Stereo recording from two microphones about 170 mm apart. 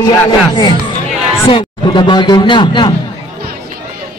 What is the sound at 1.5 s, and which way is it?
Speech, 30° left (ahead or behind).